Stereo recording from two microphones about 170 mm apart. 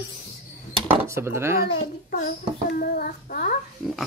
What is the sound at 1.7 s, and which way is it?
A child's voice, 60° left (ahead or behind).